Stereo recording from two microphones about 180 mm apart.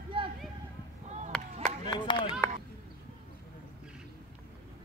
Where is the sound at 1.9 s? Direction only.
25° left (ahead or behind).